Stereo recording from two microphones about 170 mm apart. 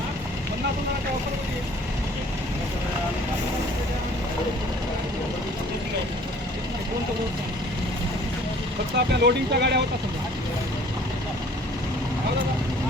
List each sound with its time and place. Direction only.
9.0 s speech: 75° right (ahead or behind)